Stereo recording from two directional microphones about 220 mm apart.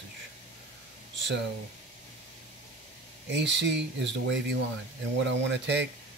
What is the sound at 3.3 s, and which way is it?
Speech, 55° right (ahead or behind).